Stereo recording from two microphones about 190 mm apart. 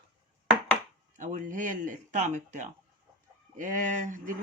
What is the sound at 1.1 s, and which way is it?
Speech, 40° right (ahead or behind).